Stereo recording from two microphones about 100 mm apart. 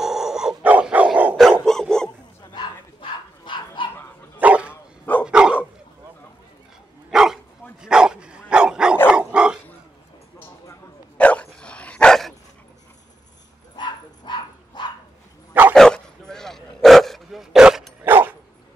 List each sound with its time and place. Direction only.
0.0 s dog: 5° right (ahead or behind)
1.3 s dog: centre (ahead or behind)
2.4 s bow-wow: 50° left (ahead or behind)
4.4 s dog: 15° right (ahead or behind)
7.1 s bow-wow: 5° right (ahead or behind)
7.8 s dog: 5° right (ahead or behind)
11.1 s dog: 10° left (ahead or behind)
13.7 s bow-wow: 50° left (ahead or behind)
15.7 s dog: 5° left (ahead or behind)
18.0 s dog: 20° right (ahead or behind)